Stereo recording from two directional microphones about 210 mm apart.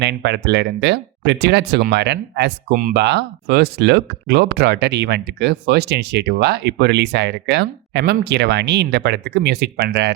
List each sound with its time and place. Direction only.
0.0 s speech: 55° right (ahead or behind)